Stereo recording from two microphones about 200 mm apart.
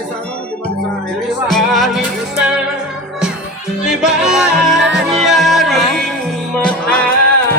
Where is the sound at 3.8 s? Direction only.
5° right (ahead or behind).